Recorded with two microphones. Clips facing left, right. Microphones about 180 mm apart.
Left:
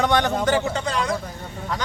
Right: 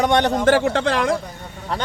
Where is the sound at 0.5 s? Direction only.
70° right (ahead or behind).